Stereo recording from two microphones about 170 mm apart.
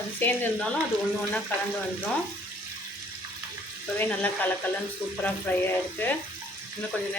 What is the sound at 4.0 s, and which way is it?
Speech, 10° left (ahead or behind).